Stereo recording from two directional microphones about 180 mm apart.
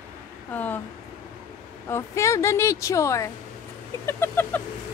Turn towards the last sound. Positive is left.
turn(degrees=10)  # may be behind; listen again after turning